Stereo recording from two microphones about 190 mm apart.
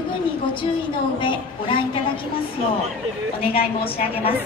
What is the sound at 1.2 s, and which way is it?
Speech, 25° left (ahead or behind).